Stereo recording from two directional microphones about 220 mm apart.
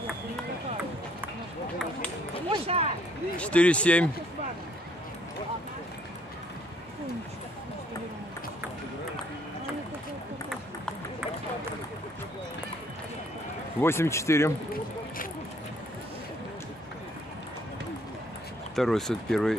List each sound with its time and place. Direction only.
2.5 s a sound: 25° right (ahead or behind)
3.3 s speech: 5° left (ahead or behind)
13.7 s speech: 10° left (ahead or behind)
18.8 s speech: centre (ahead or behind)